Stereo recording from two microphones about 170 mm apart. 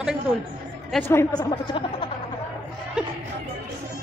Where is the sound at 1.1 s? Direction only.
25° left (ahead or behind).